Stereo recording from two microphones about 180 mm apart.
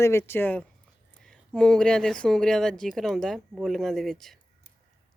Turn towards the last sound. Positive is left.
turn(degrees=0)  # may be behind; listen again after turning